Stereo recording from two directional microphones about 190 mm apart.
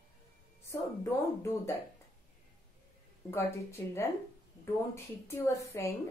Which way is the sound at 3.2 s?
15° left (ahead or behind).